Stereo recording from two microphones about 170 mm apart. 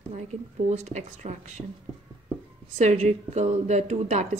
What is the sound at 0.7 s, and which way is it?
Speech, 45° right (ahead or behind).